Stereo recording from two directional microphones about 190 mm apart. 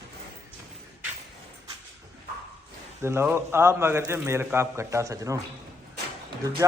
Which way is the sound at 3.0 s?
15° right (ahead or behind).